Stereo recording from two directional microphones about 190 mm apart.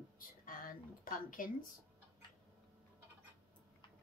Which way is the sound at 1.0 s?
45° left (ahead or behind).